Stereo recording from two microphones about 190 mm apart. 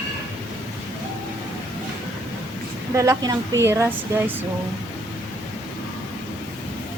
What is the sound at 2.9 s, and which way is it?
Speech, 15° right (ahead or behind).